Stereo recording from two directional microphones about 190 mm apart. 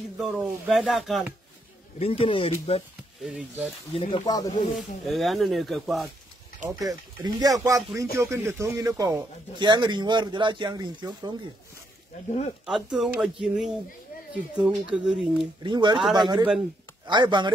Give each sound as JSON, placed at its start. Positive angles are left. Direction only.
{"t": 0.2, "sound": "speech", "side_deg": 0}
{"t": 2.0, "sound": "speech", "side_deg": 30}
{"t": 3.2, "sound": "speech", "side_deg": -5}
{"t": 3.9, "sound": "speech", "side_deg": 30}
{"t": 4.7, "sound": "speech", "side_deg": 0}
{"t": 6.8, "sound": "speech", "side_deg": -20}
{"t": 12.6, "sound": "speech", "side_deg": -5}
{"t": 15.6, "sound": "speech", "side_deg": -25}